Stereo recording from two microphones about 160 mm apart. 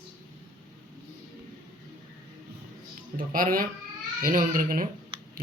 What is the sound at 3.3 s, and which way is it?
Speech, 60° right (ahead or behind).